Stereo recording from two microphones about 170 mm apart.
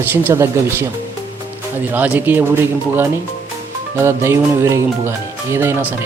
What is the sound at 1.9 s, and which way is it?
Speech, 10° right (ahead or behind).